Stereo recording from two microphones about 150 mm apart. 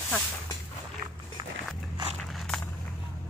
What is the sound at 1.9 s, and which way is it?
Walk, 30° right (ahead or behind).